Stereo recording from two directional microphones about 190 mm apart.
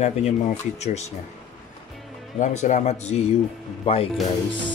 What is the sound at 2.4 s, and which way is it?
Speech, 40° left (ahead or behind).